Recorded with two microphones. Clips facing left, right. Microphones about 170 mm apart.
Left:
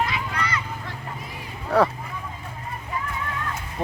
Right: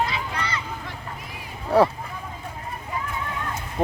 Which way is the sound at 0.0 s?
25° right (ahead or behind).